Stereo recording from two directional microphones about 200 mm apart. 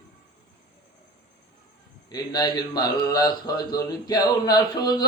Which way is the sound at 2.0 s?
20° left (ahead or behind).